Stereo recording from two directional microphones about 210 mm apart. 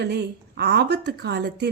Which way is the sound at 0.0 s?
50° right (ahead or behind).